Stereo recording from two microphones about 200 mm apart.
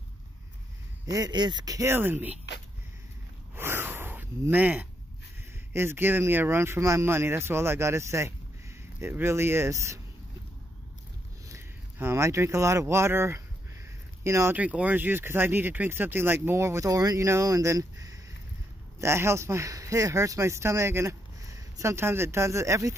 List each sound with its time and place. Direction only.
1.0 s speech: 20° right (ahead or behind)
3.5 s gasp: 10° right (ahead or behind)
5.7 s speech: 10° right (ahead or behind)
11.4 s speech: 15° right (ahead or behind)